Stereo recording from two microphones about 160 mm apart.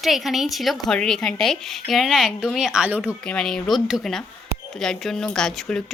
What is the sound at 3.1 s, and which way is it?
Speech, 5° left (ahead or behind).